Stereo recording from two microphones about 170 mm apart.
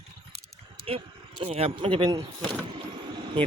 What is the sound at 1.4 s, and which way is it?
Speech, 35° right (ahead or behind).